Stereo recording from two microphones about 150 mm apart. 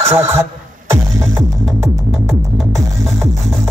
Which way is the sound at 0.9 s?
20° right (ahead or behind).